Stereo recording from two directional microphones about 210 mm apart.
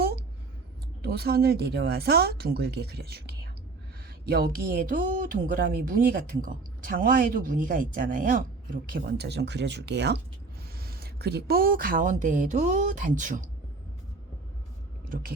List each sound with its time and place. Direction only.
1.0 s speech: 50° right (ahead or behind)
4.3 s speech: 45° right (ahead or behind)
15.1 s a sound: 45° right (ahead or behind)